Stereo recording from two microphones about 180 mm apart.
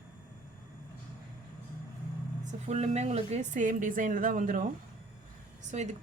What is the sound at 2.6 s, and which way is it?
Speech, 35° right (ahead or behind).